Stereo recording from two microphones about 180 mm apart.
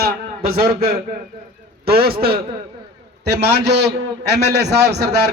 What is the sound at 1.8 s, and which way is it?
Speech, 60° right (ahead or behind).